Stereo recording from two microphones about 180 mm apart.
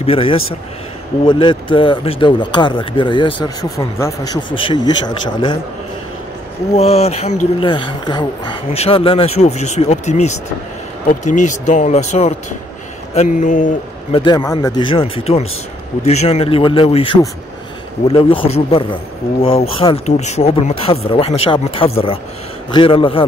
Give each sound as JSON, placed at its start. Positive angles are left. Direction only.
{"t": 0.0, "sound": "speech", "side_deg": 30}
{"t": 6.7, "sound": "speech", "side_deg": 35}
{"t": 14.1, "sound": "speech", "side_deg": 20}